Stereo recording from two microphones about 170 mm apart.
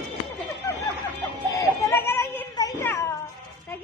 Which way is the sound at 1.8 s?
15° left (ahead or behind).